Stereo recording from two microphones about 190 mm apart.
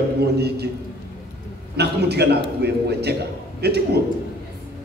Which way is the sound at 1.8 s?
60° right (ahead or behind).